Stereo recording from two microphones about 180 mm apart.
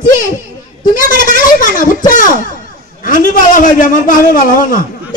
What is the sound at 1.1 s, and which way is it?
A man's voice, 45° left (ahead or behind).